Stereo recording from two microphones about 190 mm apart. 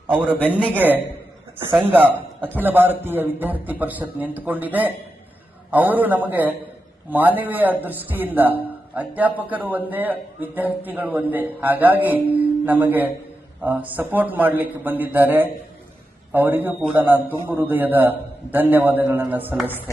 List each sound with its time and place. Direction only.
0.1 s a man's voice: 10° right (ahead or behind)
1.7 s a man's voice: 10° right (ahead or behind)